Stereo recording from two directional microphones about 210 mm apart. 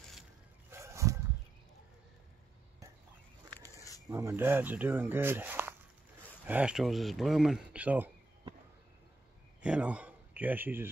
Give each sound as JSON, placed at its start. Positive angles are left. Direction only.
{"t": 0.7, "sound": "a sound", "side_deg": -15}
{"t": 4.1, "sound": "speech", "side_deg": -10}
{"t": 9.6, "sound": "speech", "side_deg": -5}